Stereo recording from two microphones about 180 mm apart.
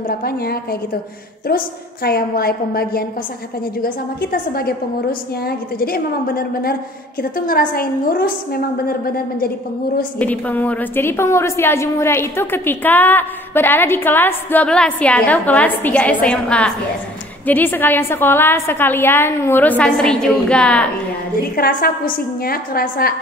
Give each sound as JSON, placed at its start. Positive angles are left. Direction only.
{"t": 0.2, "sound": "a woman's voice", "side_deg": 60}
{"t": 10.1, "sound": "a woman's voice", "side_deg": 10}
{"t": 21.5, "sound": "a woman's voice", "side_deg": 55}